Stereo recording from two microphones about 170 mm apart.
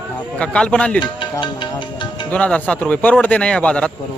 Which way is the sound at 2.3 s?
10° left (ahead or behind).